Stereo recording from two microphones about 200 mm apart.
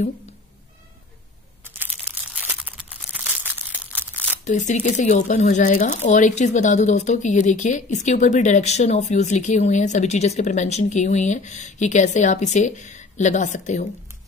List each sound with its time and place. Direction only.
2.4 s crumpling: 5° right (ahead or behind)
4.5 s speech: 40° left (ahead or behind)